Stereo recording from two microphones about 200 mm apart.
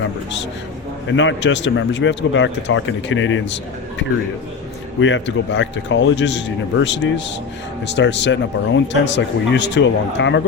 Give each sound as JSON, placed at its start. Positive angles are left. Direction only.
{"t": 1.1, "sound": "speech", "side_deg": 70}
{"t": 4.9, "sound": "speech", "side_deg": 65}